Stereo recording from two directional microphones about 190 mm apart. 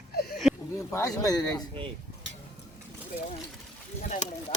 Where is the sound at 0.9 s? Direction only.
15° left (ahead or behind).